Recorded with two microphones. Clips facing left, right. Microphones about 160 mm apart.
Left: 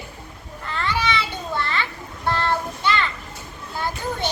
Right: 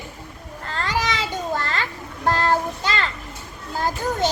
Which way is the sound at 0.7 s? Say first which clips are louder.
Left 1 dB; 40° right (ahead or behind).